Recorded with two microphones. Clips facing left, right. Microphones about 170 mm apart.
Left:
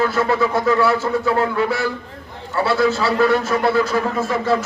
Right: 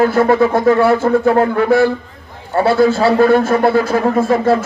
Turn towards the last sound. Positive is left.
turn(degrees=-50)  # may be behind; listen again after turning